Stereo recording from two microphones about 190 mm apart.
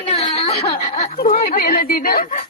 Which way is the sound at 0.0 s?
30° left (ahead or behind).